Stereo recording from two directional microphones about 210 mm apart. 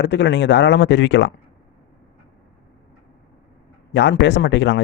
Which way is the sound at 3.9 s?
55° left (ahead or behind).